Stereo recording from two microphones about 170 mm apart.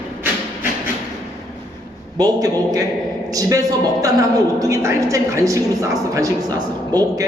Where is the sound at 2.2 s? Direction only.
20° right (ahead or behind).